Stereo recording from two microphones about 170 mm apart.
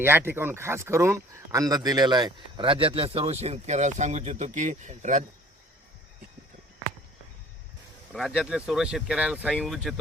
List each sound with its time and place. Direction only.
0.0 s speech: 15° right (ahead or behind); by 5.2 s 45° right (ahead or behind)
8.1 s speech: centre (ahead or behind)